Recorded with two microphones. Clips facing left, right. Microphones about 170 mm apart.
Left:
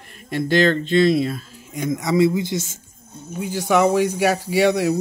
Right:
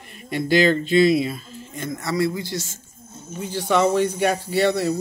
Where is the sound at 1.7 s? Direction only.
15° left (ahead or behind).